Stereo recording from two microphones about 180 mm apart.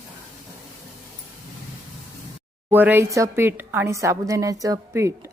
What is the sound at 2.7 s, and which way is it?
Speech, 10° right (ahead or behind).